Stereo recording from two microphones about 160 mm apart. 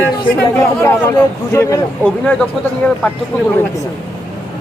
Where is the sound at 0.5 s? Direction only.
15° left (ahead or behind).